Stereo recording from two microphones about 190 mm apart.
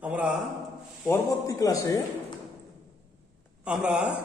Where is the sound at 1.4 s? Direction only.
15° left (ahead or behind).